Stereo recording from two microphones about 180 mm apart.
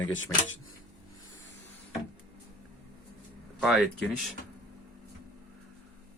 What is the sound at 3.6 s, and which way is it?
Speech, centre (ahead or behind).